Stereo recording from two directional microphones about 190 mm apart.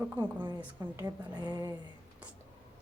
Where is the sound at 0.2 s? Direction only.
10° right (ahead or behind).